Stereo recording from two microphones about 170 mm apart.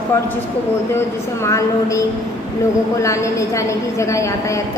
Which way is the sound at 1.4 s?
20° left (ahead or behind).